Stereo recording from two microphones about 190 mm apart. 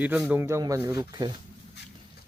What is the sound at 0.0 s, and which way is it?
Speech, 10° right (ahead or behind).